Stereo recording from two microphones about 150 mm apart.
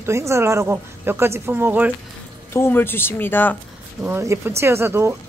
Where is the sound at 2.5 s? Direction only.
15° left (ahead or behind).